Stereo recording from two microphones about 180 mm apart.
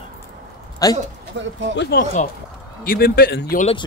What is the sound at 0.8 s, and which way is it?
Speech, 20° left (ahead or behind).